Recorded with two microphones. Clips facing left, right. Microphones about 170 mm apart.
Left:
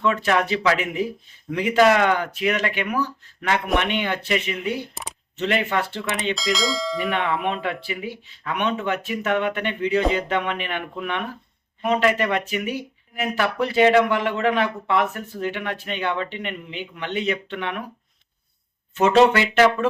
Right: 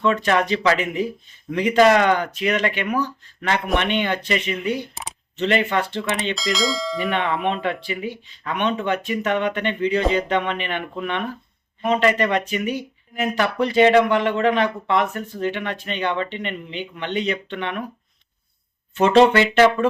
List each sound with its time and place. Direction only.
0.0 s speech: 5° left (ahead or behind)
18.9 s speech: 5° left (ahead or behind)